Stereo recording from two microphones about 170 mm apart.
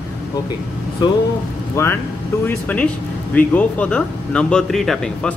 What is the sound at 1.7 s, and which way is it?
Speech, 15° left (ahead or behind).